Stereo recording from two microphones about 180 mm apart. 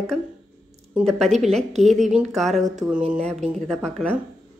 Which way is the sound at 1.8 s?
40° right (ahead or behind).